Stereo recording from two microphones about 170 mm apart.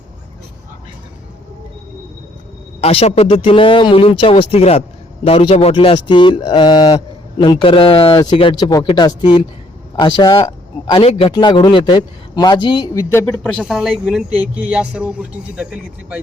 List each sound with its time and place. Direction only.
2.8 s a man's voice: 35° left (ahead or behind); by 16.2 s 5° right (ahead or behind)